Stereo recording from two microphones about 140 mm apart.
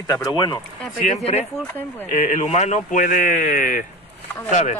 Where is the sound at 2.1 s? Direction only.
60° left (ahead or behind).